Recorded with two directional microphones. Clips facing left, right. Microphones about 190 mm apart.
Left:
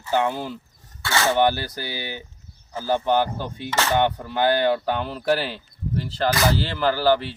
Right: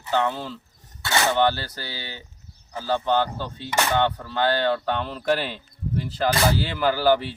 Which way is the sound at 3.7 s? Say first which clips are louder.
Even; 15° right (ahead or behind).